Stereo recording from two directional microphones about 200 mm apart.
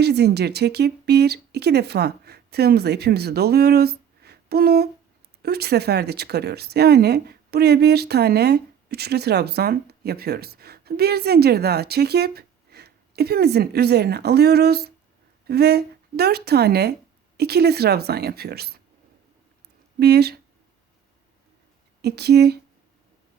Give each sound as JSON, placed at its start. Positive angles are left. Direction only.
{"t": 0.0, "sound": "speech", "side_deg": -55}
{"t": 20.0, "sound": "speech", "side_deg": -55}
{"t": 22.0, "sound": "speech", "side_deg": -55}